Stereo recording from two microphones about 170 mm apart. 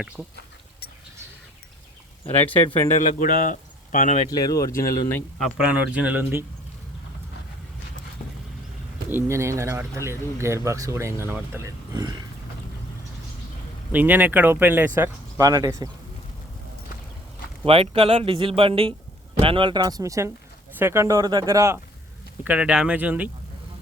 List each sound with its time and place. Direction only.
3.2 s speech: 50° left (ahead or behind)
4.3 s speech: 20° left (ahead or behind)
5.4 s speech: centre (ahead or behind)
9.0 s speech: 15° right (ahead or behind)
13.9 s speech: 10° right (ahead or behind)
17.7 s speech: 35° right (ahead or behind); by 21.8 s 20° right (ahead or behind)
22.4 s speech: 5° right (ahead or behind)